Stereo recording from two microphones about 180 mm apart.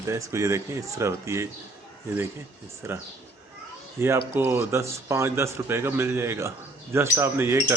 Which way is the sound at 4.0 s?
15° right (ahead or behind).